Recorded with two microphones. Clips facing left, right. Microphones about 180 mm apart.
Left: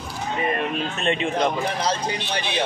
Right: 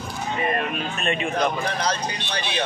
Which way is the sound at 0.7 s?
25° left (ahead or behind).